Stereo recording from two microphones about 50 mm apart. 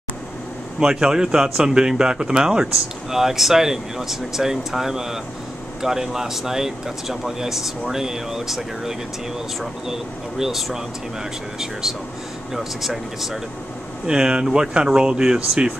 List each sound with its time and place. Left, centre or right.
0.7 s speech: centre
10.4 s speech: centre
12.5 s speech: centre
14.0 s speech: centre